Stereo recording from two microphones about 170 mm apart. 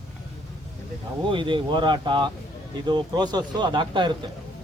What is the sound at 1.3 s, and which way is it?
A man's voice, 30° right (ahead or behind).